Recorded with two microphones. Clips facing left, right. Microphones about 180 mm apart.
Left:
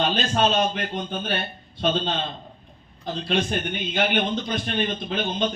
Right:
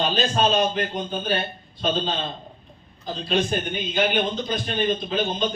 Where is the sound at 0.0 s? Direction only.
60° left (ahead or behind).